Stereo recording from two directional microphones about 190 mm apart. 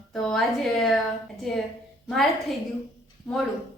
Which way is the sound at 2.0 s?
Centre (ahead or behind).